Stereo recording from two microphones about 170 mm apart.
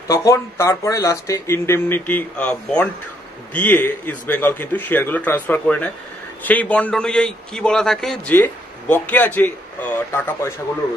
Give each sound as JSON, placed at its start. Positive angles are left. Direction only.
{"t": 0.1, "sound": "a man's voice", "side_deg": 15}